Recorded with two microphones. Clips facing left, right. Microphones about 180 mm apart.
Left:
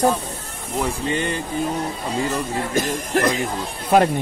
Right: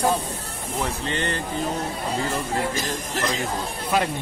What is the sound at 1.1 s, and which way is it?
Speech, 10° left (ahead or behind).